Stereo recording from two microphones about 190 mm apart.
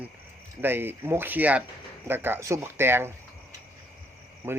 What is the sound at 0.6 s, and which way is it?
Speech, 10° right (ahead or behind).